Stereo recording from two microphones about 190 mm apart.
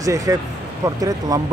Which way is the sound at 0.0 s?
20° right (ahead or behind).